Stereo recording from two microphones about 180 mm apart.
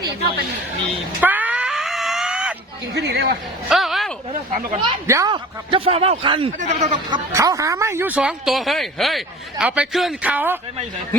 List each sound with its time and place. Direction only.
1.2 s screaming: 10° right (ahead or behind)
2.9 s speech: 65° right (ahead or behind)
3.7 s a sound: centre (ahead or behind)
4.3 s speech: 30° right (ahead or behind)
5.0 s a man's voice: 20° right (ahead or behind); by 6.9 s 40° right (ahead or behind)
7.1 s speech: 20° right (ahead or behind)